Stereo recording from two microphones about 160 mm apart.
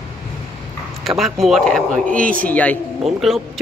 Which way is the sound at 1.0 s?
Centre (ahead or behind).